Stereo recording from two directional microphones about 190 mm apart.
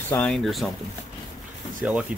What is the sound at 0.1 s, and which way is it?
Speech, 5° left (ahead or behind).